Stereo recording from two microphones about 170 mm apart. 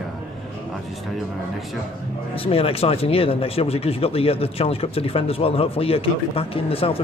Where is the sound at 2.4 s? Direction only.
35° left (ahead or behind).